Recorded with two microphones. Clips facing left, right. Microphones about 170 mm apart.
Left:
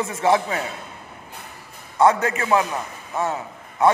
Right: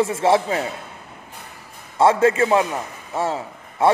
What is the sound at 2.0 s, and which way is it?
A man's voice, 25° right (ahead or behind).